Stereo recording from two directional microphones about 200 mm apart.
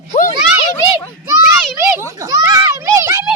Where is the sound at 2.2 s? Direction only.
15° right (ahead or behind).